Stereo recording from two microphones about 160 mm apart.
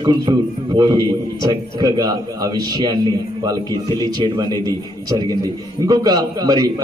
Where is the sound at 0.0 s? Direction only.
25° right (ahead or behind).